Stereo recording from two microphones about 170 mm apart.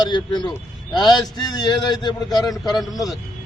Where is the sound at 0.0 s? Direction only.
25° left (ahead or behind).